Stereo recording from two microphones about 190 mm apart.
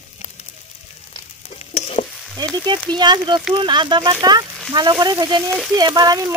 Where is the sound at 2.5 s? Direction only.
25° right (ahead or behind).